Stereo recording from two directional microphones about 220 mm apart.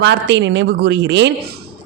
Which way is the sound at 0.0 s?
50° right (ahead or behind).